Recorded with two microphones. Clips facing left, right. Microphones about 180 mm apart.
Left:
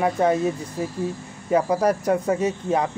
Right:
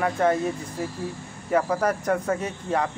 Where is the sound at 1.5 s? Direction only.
15° left (ahead or behind).